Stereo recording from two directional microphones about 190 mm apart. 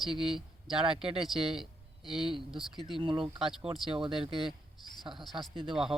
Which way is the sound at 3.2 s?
Centre (ahead or behind).